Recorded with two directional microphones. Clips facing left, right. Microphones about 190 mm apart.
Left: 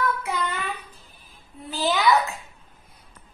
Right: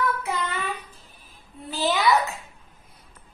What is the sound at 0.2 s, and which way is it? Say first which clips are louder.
Child singing: left 1 dB; centre (ahead or behind).